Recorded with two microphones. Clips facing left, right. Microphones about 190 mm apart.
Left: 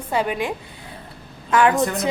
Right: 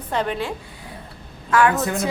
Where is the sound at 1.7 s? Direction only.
5° right (ahead or behind).